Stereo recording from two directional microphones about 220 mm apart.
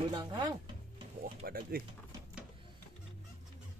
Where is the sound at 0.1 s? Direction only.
20° right (ahead or behind).